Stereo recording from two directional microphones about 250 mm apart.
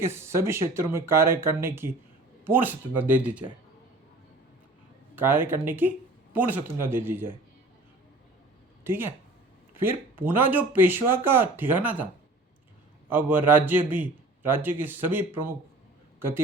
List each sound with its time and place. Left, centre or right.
0.0 s a man's voice: centre
5.1 s a man's voice: centre
8.8 s a man's voice: centre
13.1 s a man's voice: centre